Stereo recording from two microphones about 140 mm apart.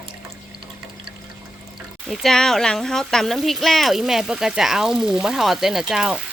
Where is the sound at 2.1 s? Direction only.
Centre (ahead or behind).